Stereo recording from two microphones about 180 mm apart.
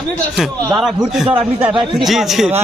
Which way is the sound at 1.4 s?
30° right (ahead or behind).